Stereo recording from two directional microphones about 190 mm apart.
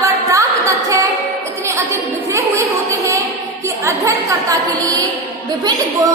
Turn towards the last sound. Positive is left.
turn(degrees=-20)  # may be behind; listen again after turning